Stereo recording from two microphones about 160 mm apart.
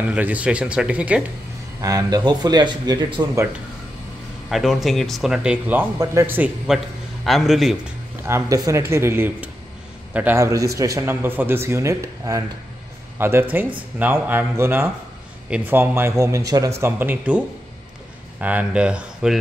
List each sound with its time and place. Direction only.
0.1 s speech: 10° right (ahead or behind)
1.8 s a man's voice: 20° right (ahead or behind)
4.5 s speech: centre (ahead or behind)
7.2 s speech: centre (ahead or behind)
8.3 s speech: 20° right (ahead or behind)
18.4 s speech: 10° right (ahead or behind)